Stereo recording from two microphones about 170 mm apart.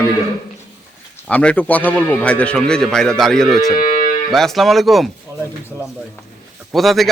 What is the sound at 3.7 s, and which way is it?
Moo, 50° left (ahead or behind).